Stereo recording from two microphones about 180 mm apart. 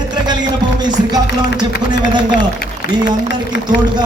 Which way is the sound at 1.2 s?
70° left (ahead or behind).